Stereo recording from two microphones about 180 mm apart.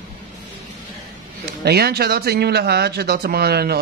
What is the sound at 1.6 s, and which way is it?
Speech, 60° right (ahead or behind).